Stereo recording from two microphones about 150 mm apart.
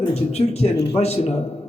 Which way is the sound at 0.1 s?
45° left (ahead or behind).